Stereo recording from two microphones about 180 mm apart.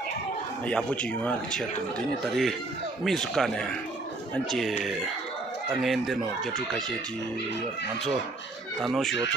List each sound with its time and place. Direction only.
0.7 s speech: 5° left (ahead or behind)
8.8 s speech: centre (ahead or behind)